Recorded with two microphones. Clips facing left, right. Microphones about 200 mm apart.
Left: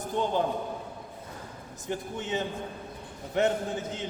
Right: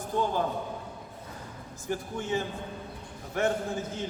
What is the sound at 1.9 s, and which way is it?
A man's voice, 20° left (ahead or behind).